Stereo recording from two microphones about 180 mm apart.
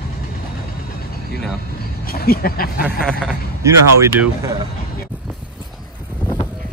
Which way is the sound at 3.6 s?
15° right (ahead or behind).